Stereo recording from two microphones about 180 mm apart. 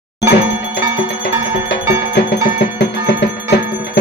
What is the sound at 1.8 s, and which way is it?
Music, 15° right (ahead or behind).